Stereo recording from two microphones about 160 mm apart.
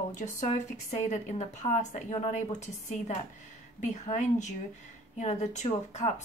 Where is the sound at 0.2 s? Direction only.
50° left (ahead or behind).